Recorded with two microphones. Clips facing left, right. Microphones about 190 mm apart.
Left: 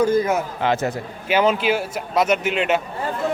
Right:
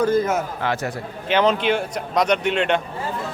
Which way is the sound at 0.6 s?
20° left (ahead or behind).